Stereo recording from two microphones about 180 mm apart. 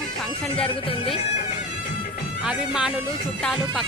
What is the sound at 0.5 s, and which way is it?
Music, 30° left (ahead or behind).